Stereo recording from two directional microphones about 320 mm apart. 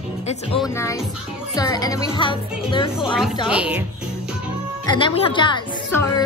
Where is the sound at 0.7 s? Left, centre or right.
Centre.